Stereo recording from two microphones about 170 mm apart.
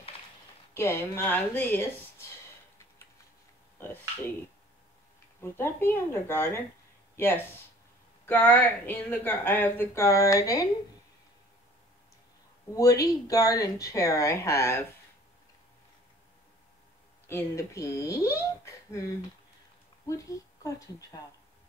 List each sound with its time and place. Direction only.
0.7 s speech: 15° left (ahead or behind)
3.7 s a sound: 15° left (ahead or behind)
5.4 s speech: 15° left (ahead or behind)
8.3 s speech: 10° left (ahead or behind)
12.7 s speech: 20° left (ahead or behind)
17.3 s a woman's voice: 15° left (ahead or behind)